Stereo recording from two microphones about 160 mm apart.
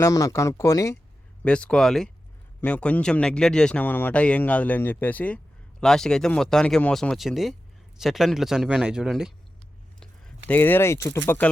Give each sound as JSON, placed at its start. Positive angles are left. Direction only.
{"t": 0.0, "sound": "speech", "side_deg": 20}
{"t": 1.5, "sound": "a man's voice", "side_deg": 5}